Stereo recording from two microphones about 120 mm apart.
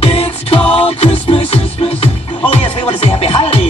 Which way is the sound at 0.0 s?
50° left (ahead or behind).